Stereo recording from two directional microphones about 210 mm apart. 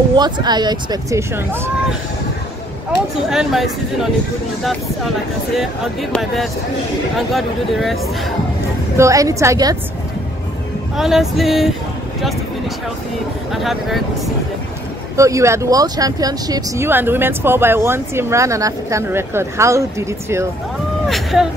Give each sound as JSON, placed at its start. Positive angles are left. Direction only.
{"t": 0.1, "sound": "speech", "side_deg": -20}
{"t": 3.3, "sound": "speech", "side_deg": 0}
{"t": 8.9, "sound": "speech", "side_deg": -15}
{"t": 11.0, "sound": "speech", "side_deg": 0}
{"t": 12.2, "sound": "a sound", "side_deg": 0}
{"t": 13.5, "sound": "speech", "side_deg": 0}
{"t": 15.1, "sound": "speech", "side_deg": -15}
{"t": 21.1, "sound": "speech", "side_deg": 0}